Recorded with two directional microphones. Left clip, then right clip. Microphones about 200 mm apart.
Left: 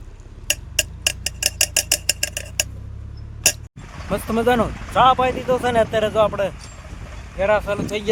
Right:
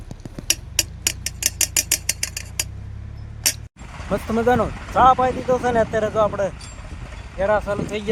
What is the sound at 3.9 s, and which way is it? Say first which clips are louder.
Speech: even; 5° right (ahead or behind).